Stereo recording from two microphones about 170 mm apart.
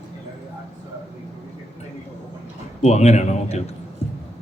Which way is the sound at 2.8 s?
40° left (ahead or behind).